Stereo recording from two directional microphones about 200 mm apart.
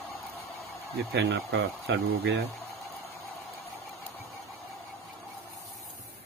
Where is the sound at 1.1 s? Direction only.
55° right (ahead or behind).